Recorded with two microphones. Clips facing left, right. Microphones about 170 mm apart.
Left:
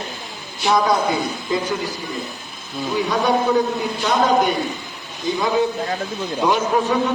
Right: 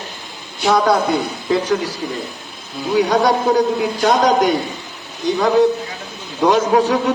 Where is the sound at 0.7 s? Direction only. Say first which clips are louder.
Right 3 dB; 70° right (ahead or behind).